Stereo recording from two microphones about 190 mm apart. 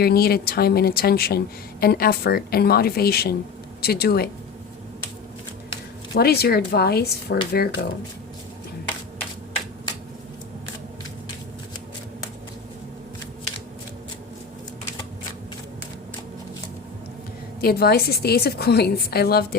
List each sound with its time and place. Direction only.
0.0 s a woman's voice: 55° left (ahead or behind)
6.1 s a woman's voice: 55° left (ahead or behind)
17.6 s a woman's voice: 55° left (ahead or behind)